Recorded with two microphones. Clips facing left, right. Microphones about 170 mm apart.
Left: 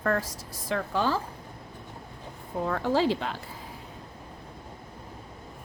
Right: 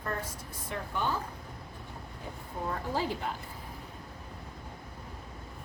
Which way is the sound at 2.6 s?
90° left.